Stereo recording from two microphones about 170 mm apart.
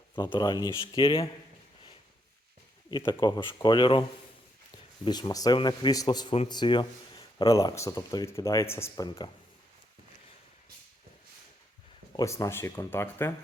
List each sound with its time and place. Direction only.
0.2 s speech: 25° left (ahead or behind)
3.1 s speech: 25° left (ahead or behind)
5.0 s speech: 25° left (ahead or behind)
9.0 s speech: 25° left (ahead or behind)
12.1 s speech: 20° left (ahead or behind)